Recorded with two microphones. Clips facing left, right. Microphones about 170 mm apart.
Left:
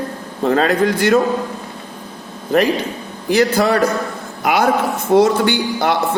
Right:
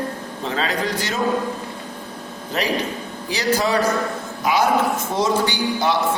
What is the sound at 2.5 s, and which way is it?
A man's voice, 55° left (ahead or behind).